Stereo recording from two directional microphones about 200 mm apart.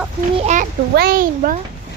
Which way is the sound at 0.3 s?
35° right (ahead or behind).